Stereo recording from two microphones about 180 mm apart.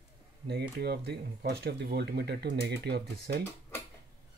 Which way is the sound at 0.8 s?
65° right (ahead or behind).